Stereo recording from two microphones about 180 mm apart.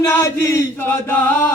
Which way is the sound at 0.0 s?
15° left (ahead or behind).